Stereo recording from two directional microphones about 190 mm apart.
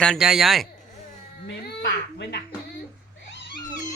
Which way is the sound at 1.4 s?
65° left (ahead or behind).